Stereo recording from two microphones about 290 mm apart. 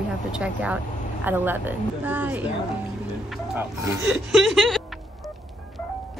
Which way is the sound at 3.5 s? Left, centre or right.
Centre.